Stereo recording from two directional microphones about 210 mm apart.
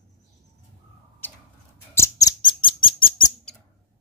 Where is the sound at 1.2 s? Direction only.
10° left (ahead or behind).